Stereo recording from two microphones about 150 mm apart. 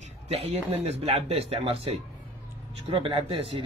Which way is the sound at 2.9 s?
35° right (ahead or behind).